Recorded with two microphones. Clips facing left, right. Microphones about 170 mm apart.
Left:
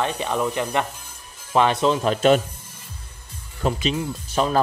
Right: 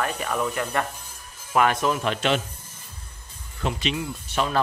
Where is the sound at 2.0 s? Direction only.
40° left (ahead or behind).